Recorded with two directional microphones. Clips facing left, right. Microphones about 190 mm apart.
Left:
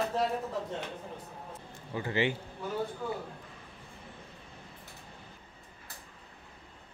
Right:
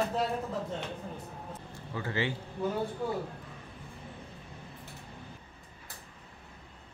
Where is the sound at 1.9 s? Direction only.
15° left (ahead or behind).